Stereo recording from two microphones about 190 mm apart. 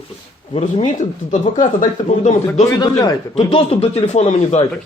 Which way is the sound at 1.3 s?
40° left (ahead or behind).